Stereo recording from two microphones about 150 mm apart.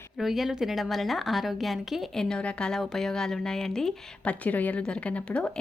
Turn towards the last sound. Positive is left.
turn(degrees=10)  # may be behind; listen again after turning